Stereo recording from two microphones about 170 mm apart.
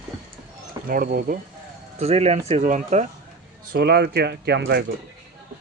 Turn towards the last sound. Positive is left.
turn(degrees=-75)  # may be behind; listen again after turning